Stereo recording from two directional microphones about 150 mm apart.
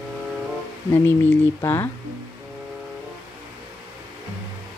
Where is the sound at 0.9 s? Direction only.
15° left (ahead or behind).